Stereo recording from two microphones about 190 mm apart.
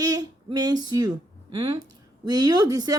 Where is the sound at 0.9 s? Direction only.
20° right (ahead or behind).